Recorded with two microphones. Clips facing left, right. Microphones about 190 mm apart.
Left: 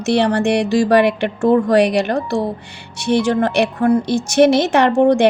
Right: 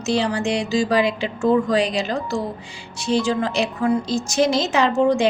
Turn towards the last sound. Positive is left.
turn(degrees=65)  # may be behind; listen again after turning